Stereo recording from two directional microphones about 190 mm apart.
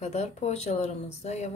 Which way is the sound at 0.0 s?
35° left (ahead or behind).